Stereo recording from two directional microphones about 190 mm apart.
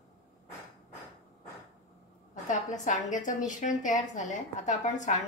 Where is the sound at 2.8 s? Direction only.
40° left (ahead or behind).